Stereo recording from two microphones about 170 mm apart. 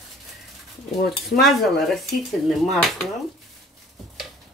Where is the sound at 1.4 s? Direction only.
Centre (ahead or behind).